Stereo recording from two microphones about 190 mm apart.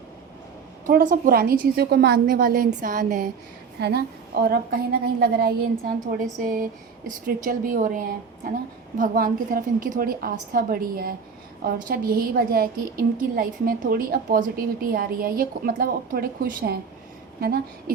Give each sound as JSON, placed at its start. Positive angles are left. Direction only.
{"t": 0.9, "sound": "a woman's voice", "side_deg": -45}
{"t": 3.8, "sound": "a woman's voice", "side_deg": -60}